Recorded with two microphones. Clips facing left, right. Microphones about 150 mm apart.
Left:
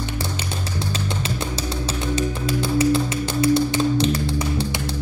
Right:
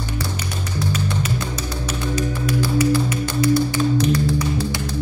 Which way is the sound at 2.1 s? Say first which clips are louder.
Right 2 dB; 25° left (ahead or behind).